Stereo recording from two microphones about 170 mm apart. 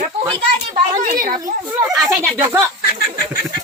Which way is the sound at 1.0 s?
55° right (ahead or behind).